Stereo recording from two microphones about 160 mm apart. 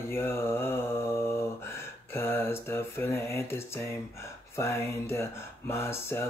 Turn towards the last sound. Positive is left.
turn(degrees=15)  # may be behind; listen again after turning